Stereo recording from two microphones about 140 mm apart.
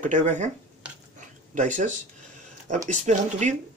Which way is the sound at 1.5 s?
60° right (ahead or behind).